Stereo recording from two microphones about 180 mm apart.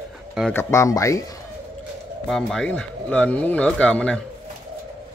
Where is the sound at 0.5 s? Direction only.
15° left (ahead or behind).